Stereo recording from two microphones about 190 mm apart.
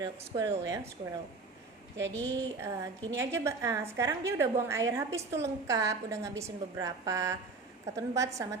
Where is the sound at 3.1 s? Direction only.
15° right (ahead or behind).